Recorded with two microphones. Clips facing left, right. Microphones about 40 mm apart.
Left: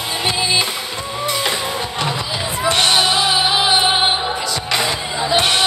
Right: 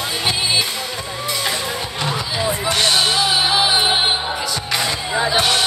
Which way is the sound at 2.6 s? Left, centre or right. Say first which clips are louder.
Left 4 dB; left.